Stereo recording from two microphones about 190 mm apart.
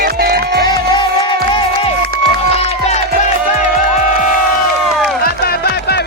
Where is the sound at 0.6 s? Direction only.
25° left (ahead or behind).